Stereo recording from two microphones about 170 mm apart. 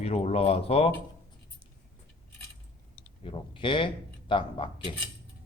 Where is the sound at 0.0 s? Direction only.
40° left (ahead or behind).